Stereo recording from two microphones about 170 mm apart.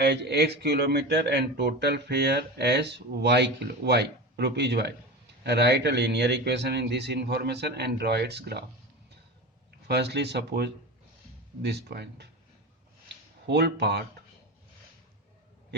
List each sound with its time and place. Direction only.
0.0 s speech: 75° right (ahead or behind)
9.8 s speech: 75° right (ahead or behind)
13.5 s speech: 80° right